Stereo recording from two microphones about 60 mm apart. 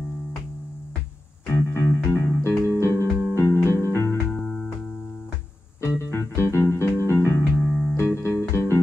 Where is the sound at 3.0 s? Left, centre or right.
Right.